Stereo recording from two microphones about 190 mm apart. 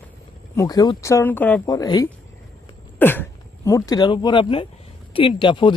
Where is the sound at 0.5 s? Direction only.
20° left (ahead or behind).